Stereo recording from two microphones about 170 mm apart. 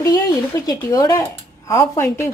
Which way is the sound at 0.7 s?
20° left (ahead or behind).